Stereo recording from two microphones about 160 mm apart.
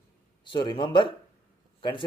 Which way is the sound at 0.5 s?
30° left (ahead or behind).